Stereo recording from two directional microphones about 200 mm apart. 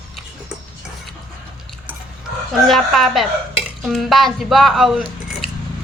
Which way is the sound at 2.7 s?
Centre (ahead or behind).